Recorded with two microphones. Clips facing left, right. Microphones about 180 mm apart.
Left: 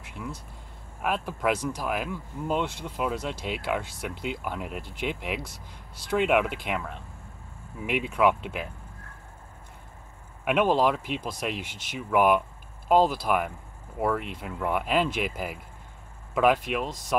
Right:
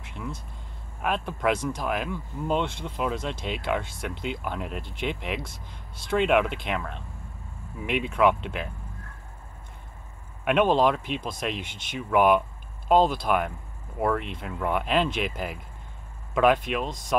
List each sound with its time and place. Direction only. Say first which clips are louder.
0.0 s vehicle: right 1 dB; 10° left (ahead or behind)
1.0 s speech: right 1 dB; 5° left (ahead or behind)
10.4 s speech: right 2 dB; 5° left (ahead or behind)